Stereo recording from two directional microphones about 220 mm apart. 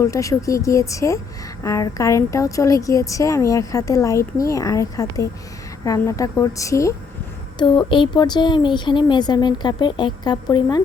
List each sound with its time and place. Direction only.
0.0 s a woman's voice: 15° left (ahead or behind)